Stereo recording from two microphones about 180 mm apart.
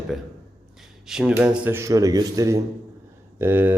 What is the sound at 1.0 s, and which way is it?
Speech, 5° right (ahead or behind).